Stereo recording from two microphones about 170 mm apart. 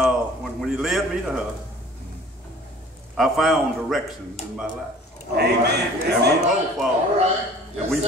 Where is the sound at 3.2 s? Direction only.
Centre (ahead or behind).